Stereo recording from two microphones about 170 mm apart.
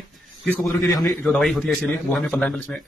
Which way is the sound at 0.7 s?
20° left (ahead or behind).